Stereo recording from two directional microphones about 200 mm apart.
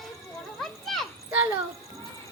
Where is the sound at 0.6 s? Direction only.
Centre (ahead or behind).